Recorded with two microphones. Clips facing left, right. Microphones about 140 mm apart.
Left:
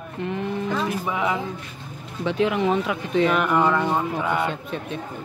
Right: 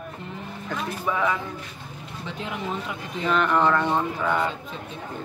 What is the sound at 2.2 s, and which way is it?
Speech, 85° left.